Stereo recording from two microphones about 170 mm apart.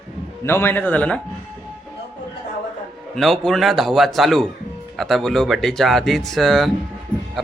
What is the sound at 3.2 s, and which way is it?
A man's voice, centre (ahead or behind).